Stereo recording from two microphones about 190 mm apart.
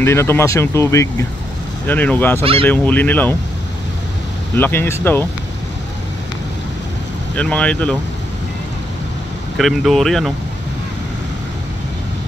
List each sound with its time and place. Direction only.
0.0 s speech: 15° left (ahead or behind)
4.6 s speech: 10° left (ahead or behind)
7.3 s speech: 5° left (ahead or behind)
9.6 s speech: centre (ahead or behind)